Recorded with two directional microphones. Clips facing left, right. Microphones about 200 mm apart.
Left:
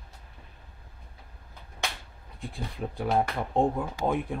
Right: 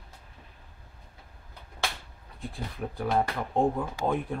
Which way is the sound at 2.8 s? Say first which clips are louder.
Left 1 dB; 15° left (ahead or behind).